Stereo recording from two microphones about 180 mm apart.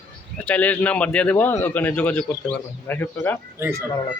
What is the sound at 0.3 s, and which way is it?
A man's voice, 10° left (ahead or behind).